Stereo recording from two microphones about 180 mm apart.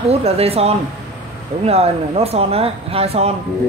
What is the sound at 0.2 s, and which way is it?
Speech, 35° right (ahead or behind).